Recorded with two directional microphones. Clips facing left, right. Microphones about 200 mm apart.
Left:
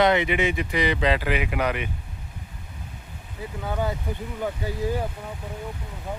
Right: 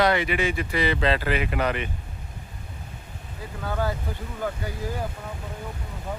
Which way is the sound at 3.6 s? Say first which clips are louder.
Even; 20° left (ahead or behind).